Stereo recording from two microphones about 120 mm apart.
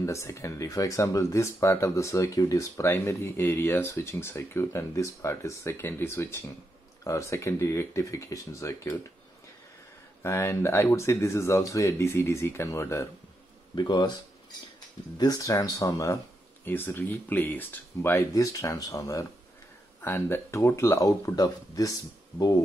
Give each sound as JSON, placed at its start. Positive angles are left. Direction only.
{"t": 0.0, "sound": "speech", "side_deg": 25}
{"t": 10.2, "sound": "speech", "side_deg": 25}
{"t": 13.7, "sound": "speech", "side_deg": 40}
{"t": 15.1, "sound": "speech", "side_deg": 30}
{"t": 16.6, "sound": "speech", "side_deg": 15}